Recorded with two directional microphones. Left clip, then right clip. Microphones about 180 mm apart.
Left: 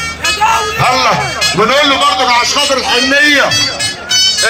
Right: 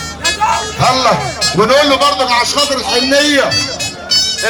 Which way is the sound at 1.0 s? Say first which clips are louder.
Left 1 dB; 15° left (ahead or behind).